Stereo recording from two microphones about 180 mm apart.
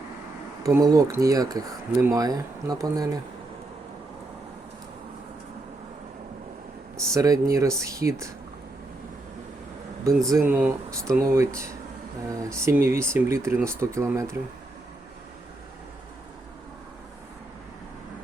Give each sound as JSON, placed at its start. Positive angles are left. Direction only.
{"t": 0.6, "sound": "speech", "side_deg": -20}
{"t": 7.1, "sound": "speech", "side_deg": -15}
{"t": 10.2, "sound": "speech", "side_deg": -15}